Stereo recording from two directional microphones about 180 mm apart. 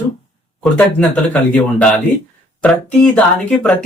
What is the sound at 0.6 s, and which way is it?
Speech, 5° left (ahead or behind).